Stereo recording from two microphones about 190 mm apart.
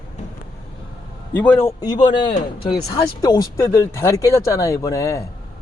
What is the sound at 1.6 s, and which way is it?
Speech, 20° left (ahead or behind).